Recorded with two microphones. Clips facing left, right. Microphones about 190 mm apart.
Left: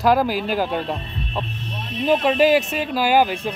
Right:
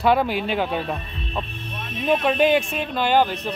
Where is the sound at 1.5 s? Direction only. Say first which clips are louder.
Left 2 dB; 55° right (ahead or behind).